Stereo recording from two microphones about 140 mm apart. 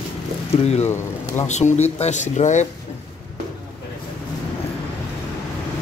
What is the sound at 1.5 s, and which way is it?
Speech, 55° left (ahead or behind).